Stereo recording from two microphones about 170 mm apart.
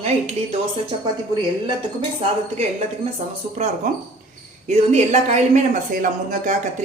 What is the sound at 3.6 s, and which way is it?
Speech, 40° right (ahead or behind).